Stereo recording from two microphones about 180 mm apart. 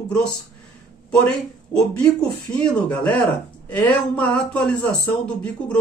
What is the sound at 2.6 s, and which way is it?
A man's voice, 5° left (ahead or behind).